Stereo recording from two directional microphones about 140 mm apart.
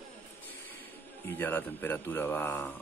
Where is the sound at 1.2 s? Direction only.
15° left (ahead or behind).